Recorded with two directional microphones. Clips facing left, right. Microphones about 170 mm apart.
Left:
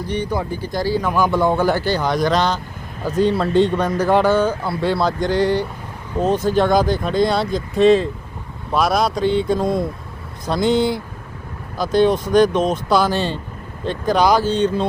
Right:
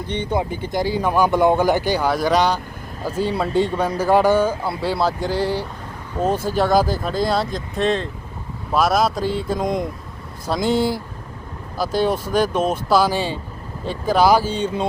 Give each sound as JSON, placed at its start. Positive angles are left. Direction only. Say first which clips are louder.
{"t": 0.1, "sound": "speech", "louder": "right 1 dB", "side_deg": -25}
{"t": 9.6, "sound": "speech", "louder": "left 2 dB", "side_deg": -15}
{"t": 10.4, "sound": "speech", "louder": "left 2 dB", "side_deg": -5}